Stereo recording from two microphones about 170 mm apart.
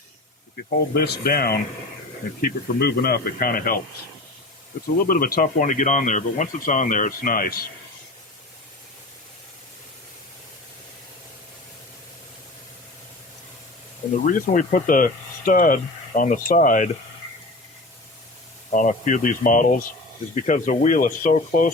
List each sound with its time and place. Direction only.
0.9 s speech: 65° left (ahead or behind)
5.0 s speech: 60° left (ahead or behind)
14.3 s speech: 50° left (ahead or behind)
18.7 s speech: 50° left (ahead or behind)